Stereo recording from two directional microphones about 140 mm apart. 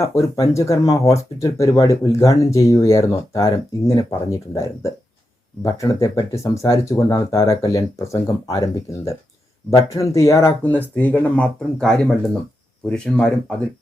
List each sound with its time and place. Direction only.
0.0 s speech: 20° left (ahead or behind); by 13.3 s 5° left (ahead or behind)